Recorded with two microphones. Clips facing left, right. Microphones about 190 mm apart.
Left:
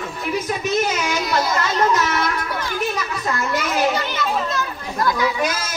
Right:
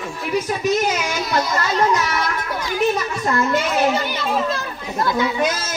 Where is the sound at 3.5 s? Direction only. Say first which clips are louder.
Right 2 dB; 25° right (ahead or behind).